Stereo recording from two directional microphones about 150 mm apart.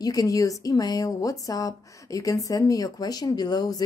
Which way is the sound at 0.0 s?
25° left (ahead or behind).